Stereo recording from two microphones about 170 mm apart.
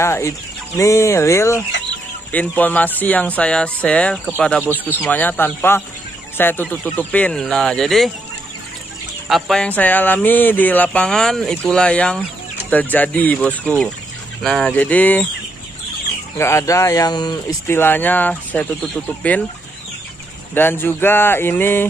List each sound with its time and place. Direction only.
0.0 s speech: 15° left (ahead or behind)
9.3 s speech: 5° left (ahead or behind)
16.3 s speech: 15° left (ahead or behind)
20.5 s speech: 10° left (ahead or behind)